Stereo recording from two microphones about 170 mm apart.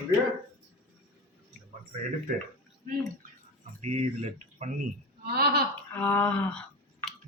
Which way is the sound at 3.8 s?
40° right (ahead or behind).